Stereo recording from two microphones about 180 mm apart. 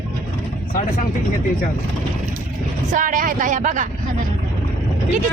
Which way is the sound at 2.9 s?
45° right (ahead or behind).